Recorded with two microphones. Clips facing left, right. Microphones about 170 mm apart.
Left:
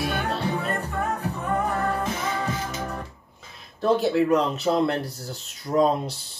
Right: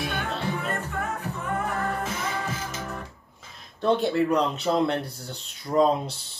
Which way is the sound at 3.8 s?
Centre (ahead or behind).